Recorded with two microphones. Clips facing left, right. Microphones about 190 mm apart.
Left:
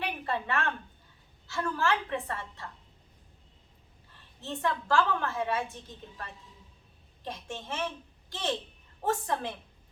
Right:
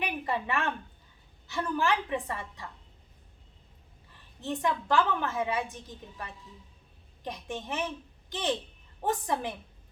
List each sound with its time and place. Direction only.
0.0 s a sound: 15° right (ahead or behind)
1.5 s a woman's voice: 20° right (ahead or behind)
4.4 s a woman's voice: 15° right (ahead or behind)
7.3 s a woman's voice: 15° right (ahead or behind)